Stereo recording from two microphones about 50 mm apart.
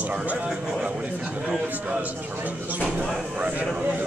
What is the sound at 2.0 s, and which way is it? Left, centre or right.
Speech, right.